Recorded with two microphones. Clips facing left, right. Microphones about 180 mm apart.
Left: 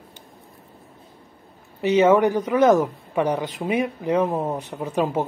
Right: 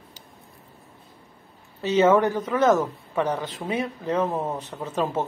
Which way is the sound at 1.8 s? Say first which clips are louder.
Left 2 dB; 15° left (ahead or behind).